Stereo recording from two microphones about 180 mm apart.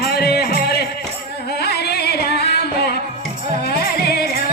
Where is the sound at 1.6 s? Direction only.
65° left (ahead or behind).